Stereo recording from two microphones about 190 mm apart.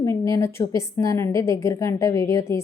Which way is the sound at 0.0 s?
15° left (ahead or behind).